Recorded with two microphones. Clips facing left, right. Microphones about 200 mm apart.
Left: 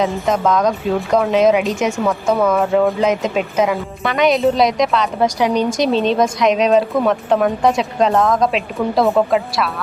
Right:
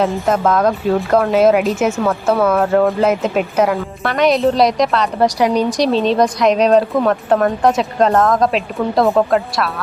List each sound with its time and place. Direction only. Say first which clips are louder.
0.0 s speech: right 1 dB; centre (ahead or behind)